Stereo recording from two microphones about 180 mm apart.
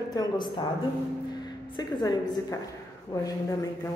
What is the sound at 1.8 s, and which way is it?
A man's voice, 20° left (ahead or behind).